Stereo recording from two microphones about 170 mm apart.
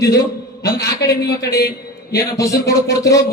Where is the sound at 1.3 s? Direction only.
15° left (ahead or behind).